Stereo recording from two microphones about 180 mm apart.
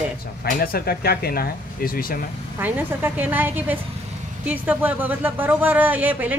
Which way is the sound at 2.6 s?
10° right (ahead or behind).